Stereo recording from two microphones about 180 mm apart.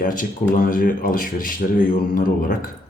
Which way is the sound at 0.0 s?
50° left (ahead or behind).